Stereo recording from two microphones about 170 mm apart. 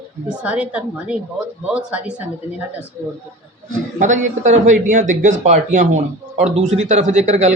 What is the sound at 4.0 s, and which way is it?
A man's voice, 45° right (ahead or behind).